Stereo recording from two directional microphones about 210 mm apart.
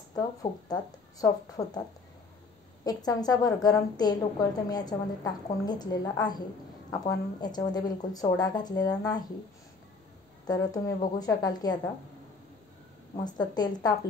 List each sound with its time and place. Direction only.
0.1 s speech: 15° left (ahead or behind)
2.8 s a woman's voice: 20° left (ahead or behind)
7.4 s a woman's voice: 20° left (ahead or behind)
10.4 s a woman's voice: 20° left (ahead or behind)
13.1 s a woman's voice: 20° left (ahead or behind)